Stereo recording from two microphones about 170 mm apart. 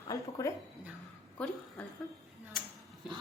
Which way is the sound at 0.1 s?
20° left (ahead or behind).